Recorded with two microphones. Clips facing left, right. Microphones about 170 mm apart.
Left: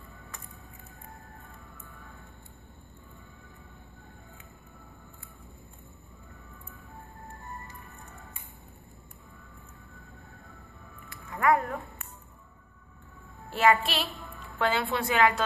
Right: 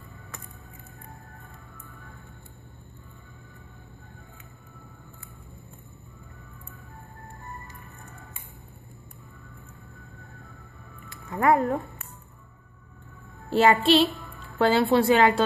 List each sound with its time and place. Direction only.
11.1 s music: 30° right (ahead or behind)
13.5 s a woman's voice: 30° right (ahead or behind)